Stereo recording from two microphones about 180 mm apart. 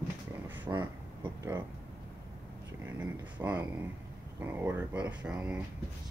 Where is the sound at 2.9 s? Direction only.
10° right (ahead or behind).